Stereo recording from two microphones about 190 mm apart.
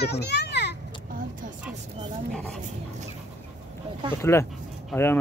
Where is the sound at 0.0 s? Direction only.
60° left (ahead or behind).